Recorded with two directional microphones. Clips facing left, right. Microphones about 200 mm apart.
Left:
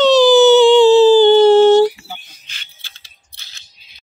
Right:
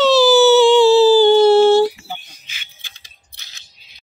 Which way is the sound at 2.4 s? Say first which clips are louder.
Right 1 dB; 5° right (ahead or behind).